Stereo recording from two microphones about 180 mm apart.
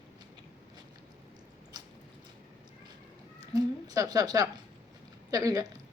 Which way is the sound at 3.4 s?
20° right (ahead or behind).